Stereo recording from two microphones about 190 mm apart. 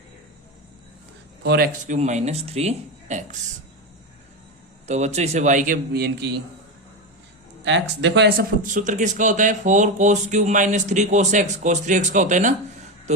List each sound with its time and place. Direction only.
1.5 s speech: 55° right (ahead or behind); by 3.2 s 35° right (ahead or behind)
4.9 s speech: 35° right (ahead or behind); by 6.3 s 60° right (ahead or behind)
7.6 s speech: 65° right (ahead or behind)
8.6 s speech: 40° right (ahead or behind)